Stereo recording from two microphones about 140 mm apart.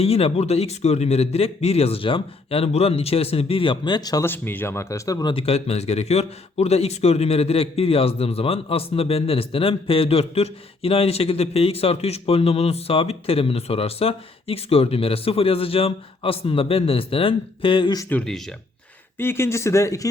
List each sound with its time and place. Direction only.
0.0 s a man's voice: 45° left (ahead or behind); by 4.3 s 25° left (ahead or behind)
4.3 s speech: 15° left (ahead or behind)
5.3 s a man's voice: 45° left (ahead or behind)
18.1 s speech: 5° left (ahead or behind)
19.2 s speech: 15° left (ahead or behind)